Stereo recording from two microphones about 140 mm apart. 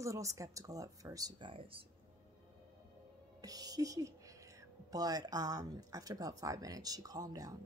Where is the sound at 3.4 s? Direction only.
25° right (ahead or behind).